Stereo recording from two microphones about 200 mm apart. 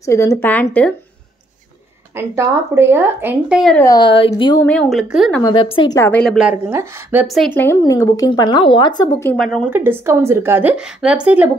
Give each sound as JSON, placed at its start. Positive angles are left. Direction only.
{"t": 0.0, "sound": "a woman's voice", "side_deg": 15}
{"t": 2.1, "sound": "a woman's voice", "side_deg": -15}
{"t": 3.7, "sound": "speech", "side_deg": 15}
{"t": 4.6, "sound": "a woman's voice", "side_deg": 0}
{"t": 5.4, "sound": "a woman's voice", "side_deg": 20}
{"t": 6.7, "sound": "a woman's voice", "side_deg": -10}
{"t": 7.5, "sound": "speech", "side_deg": 15}
{"t": 9.4, "sound": "a woman's voice", "side_deg": 0}
{"t": 9.7, "sound": "a woman's voice", "side_deg": -10}